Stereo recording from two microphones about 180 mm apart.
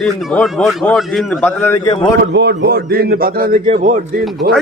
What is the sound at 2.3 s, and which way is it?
A man's voice, 75° right (ahead or behind).